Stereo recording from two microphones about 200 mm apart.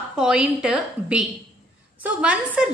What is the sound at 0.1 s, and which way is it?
A woman's voice, 5° right (ahead or behind).